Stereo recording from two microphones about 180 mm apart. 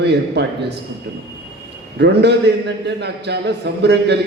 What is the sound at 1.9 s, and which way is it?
A man's voice, 70° right (ahead or behind).